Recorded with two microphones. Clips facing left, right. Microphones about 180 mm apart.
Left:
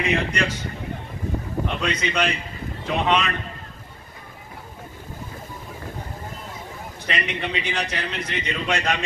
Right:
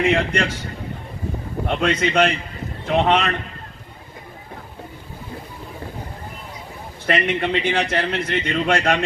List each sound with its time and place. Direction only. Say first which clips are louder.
0.0 s a man's voice: right 5 dB; 55° right (ahead or behind)
1.7 s a man's voice: right 8 dB; 50° right (ahead or behind)
7.1 s a man's voice: right 7 dB; 50° right (ahead or behind)